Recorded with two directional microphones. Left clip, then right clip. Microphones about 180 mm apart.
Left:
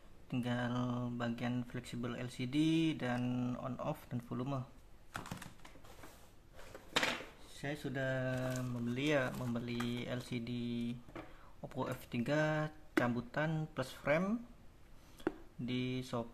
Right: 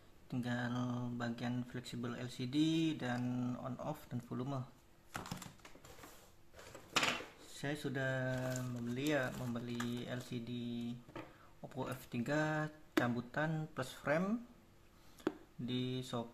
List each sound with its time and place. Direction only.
0.3 s speech: 15° left (ahead or behind)
7.6 s speech: 10° right (ahead or behind)
7.9 s speech: 5° left (ahead or behind)
8.2 s speech: 15° left (ahead or behind)